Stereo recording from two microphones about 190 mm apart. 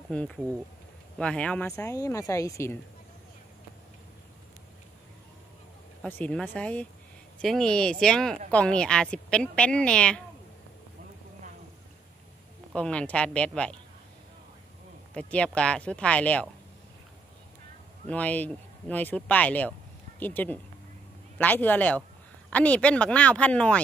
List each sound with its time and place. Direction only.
0.1 s speech: 5° left (ahead or behind)
6.0 s speech: 10° left (ahead or behind)
12.7 s speech: 5° left (ahead or behind)
15.1 s speech: 5° left (ahead or behind)
18.0 s speech: 10° left (ahead or behind)